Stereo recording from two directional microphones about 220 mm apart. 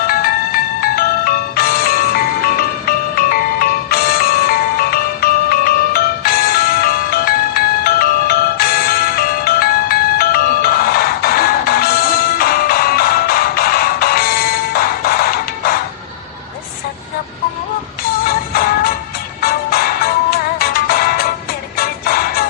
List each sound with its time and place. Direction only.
0.1 s music: 40° left (ahead or behind)
18.3 s music: 40° left (ahead or behind)